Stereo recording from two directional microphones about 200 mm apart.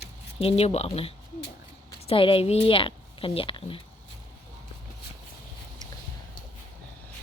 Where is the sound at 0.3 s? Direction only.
30° left (ahead or behind).